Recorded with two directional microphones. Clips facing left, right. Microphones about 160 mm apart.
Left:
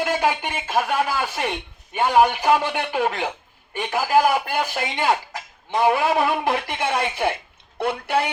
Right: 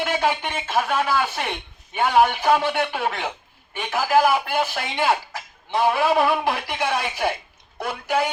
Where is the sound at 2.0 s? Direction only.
15° left (ahead or behind).